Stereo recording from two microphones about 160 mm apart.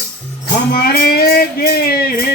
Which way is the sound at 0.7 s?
70° left (ahead or behind).